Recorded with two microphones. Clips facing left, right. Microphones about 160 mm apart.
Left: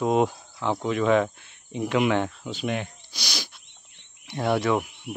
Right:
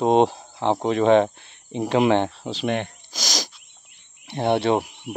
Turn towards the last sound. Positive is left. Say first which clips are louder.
# right 3 dB
turn(degrees=-25)  # may be behind; listen again after turning